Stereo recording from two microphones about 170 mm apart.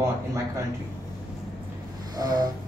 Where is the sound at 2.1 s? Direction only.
25° right (ahead or behind).